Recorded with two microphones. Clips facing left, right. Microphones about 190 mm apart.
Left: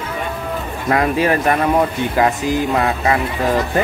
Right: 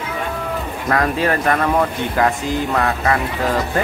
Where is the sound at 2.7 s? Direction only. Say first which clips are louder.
Left 1 dB; 20° left (ahead or behind).